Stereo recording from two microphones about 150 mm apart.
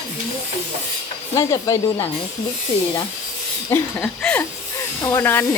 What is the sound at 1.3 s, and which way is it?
Speech, 20° left (ahead or behind).